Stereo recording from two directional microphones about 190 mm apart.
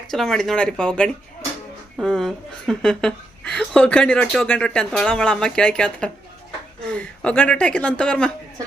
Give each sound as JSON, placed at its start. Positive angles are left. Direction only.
{"t": 0.1, "sound": "a woman's voice", "side_deg": 0}